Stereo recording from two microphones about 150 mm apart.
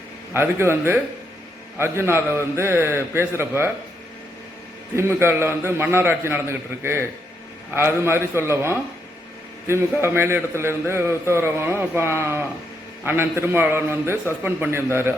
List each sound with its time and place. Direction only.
0.3 s a man's voice: 15° right (ahead or behind)
4.9 s a man's voice: 15° right (ahead or behind)
10.0 s a man's voice: 15° right (ahead or behind)